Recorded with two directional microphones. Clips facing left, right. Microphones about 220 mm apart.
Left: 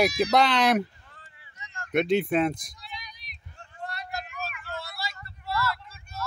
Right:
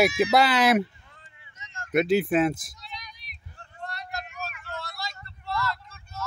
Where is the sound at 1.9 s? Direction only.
5° right (ahead or behind).